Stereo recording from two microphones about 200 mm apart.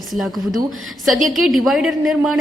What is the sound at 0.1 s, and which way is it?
A woman's voice, centre (ahead or behind).